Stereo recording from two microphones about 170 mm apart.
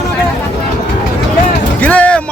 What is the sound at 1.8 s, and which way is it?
Music, 10° left (ahead or behind).